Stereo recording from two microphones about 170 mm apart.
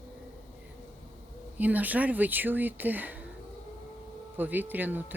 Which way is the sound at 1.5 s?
10° right (ahead or behind).